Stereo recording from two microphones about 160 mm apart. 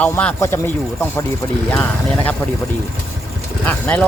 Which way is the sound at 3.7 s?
10° left (ahead or behind).